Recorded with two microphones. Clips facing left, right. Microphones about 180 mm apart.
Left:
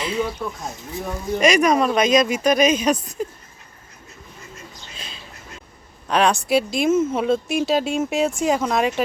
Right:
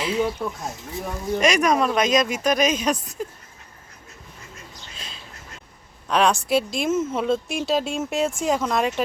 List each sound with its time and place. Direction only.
0.0 s speech: 5° right (ahead or behind)
4.9 s a sound: centre (ahead or behind)
6.1 s speech: centre (ahead or behind)